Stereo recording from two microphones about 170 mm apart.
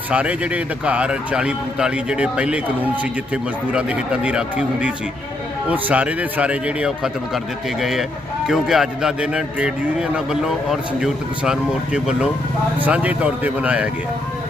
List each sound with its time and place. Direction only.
0.1 s a man's voice: 10° right (ahead or behind)